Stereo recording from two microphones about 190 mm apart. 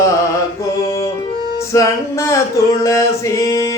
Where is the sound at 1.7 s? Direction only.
15° left (ahead or behind).